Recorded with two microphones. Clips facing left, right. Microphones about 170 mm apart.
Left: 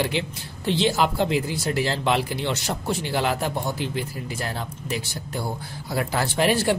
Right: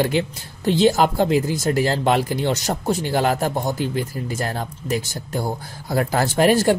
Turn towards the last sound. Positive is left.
turn(degrees=-45)  # may be behind; listen again after turning